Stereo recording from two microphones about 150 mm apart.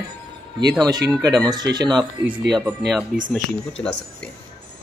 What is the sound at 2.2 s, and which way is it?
Speech, 10° right (ahead or behind).